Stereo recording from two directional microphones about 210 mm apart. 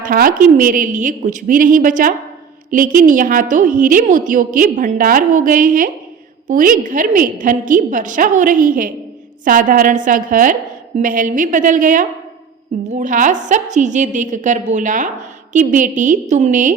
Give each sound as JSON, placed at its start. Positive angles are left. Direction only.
{"t": 0.0, "sound": "a woman's voice", "side_deg": -40}